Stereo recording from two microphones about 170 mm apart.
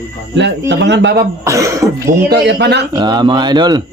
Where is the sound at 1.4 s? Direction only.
20° right (ahead or behind).